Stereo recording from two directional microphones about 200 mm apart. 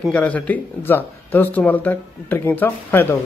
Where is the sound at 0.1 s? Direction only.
5° left (ahead or behind).